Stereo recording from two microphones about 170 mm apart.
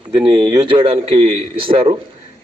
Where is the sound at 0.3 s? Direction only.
30° right (ahead or behind).